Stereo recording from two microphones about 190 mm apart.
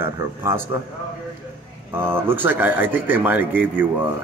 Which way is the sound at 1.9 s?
10° right (ahead or behind).